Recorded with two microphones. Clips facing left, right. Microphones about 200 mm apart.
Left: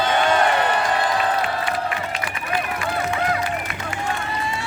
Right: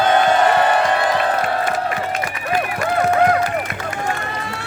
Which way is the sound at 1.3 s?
45° right (ahead or behind).